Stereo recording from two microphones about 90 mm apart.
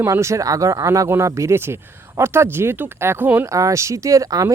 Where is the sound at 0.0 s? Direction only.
30° right (ahead or behind).